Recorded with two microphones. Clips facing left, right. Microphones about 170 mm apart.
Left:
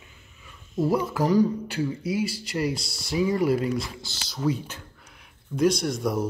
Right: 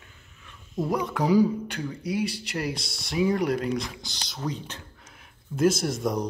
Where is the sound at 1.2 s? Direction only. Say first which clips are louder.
Right 1 dB; 10° right (ahead or behind).